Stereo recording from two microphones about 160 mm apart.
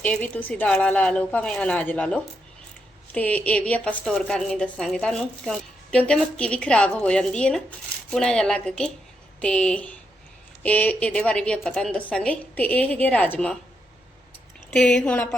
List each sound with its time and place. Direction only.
0.0 s a woman's voice: 10° left (ahead or behind)
14.7 s a woman's voice: 5° left (ahead or behind)